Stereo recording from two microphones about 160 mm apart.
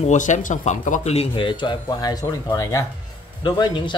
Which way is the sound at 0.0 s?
50° left (ahead or behind).